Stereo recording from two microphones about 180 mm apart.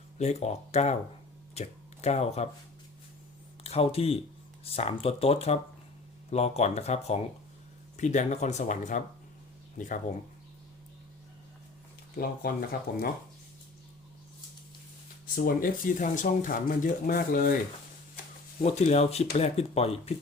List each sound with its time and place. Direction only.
0.2 s speech: 40° left (ahead or behind)
3.6 s speech: 35° left (ahead or behind)
12.1 s speech: 55° left (ahead or behind)
15.4 s speech: 55° left (ahead or behind)
18.6 s speech: 40° left (ahead or behind)